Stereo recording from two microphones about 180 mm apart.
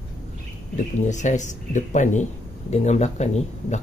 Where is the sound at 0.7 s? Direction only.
40° left (ahead or behind).